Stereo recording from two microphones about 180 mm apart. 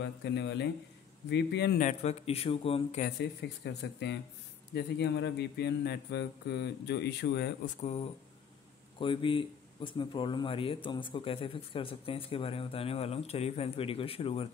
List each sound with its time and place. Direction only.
0.0 s speech: 70° left (ahead or behind)
1.8 s a man's voice: 40° left (ahead or behind)
3.2 s speech: 70° left (ahead or behind)
7.6 s a man's voice: 35° left (ahead or behind)